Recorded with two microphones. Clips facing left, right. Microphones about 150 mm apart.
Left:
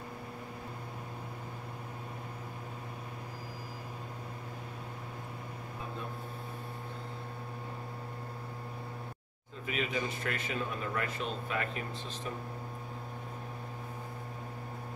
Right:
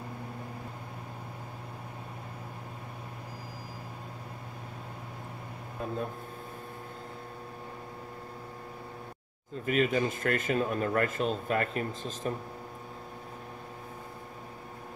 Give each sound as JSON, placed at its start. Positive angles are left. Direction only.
{"t": 9.7, "sound": "a man's voice", "side_deg": -45}